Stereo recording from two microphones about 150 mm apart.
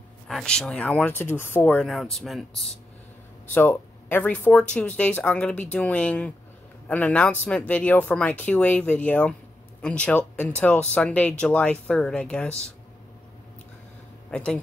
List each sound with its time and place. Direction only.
0.3 s speech: 5° left (ahead or behind)
1.9 s speech: centre (ahead or behind)
3.5 s speech: 10° left (ahead or behind)
14.3 s a man's voice: 5° left (ahead or behind)